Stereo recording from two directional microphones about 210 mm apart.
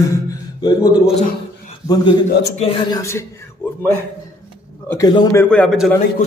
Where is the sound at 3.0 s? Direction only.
15° left (ahead or behind).